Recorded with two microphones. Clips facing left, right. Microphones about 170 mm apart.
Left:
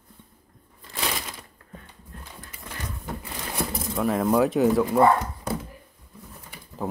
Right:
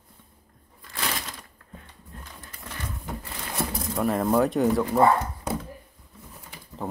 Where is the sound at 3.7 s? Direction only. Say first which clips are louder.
Even; centre (ahead or behind).